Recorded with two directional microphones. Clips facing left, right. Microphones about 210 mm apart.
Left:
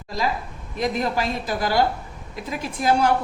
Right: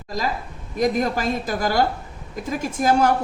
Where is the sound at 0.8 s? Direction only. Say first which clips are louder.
Right 3 dB; 45° right (ahead or behind).